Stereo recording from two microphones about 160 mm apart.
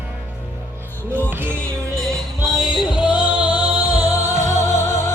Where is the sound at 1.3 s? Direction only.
10° right (ahead or behind).